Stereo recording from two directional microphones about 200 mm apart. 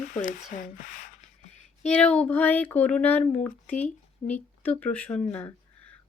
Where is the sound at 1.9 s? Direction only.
5° left (ahead or behind).